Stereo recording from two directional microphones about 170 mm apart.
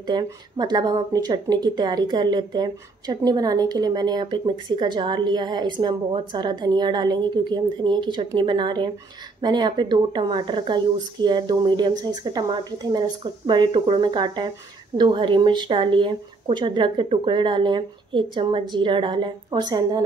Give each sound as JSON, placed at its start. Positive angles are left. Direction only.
{"t": 0.0, "sound": "speech", "side_deg": -25}